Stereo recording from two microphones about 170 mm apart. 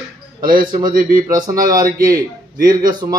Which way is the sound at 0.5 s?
55° right (ahead or behind).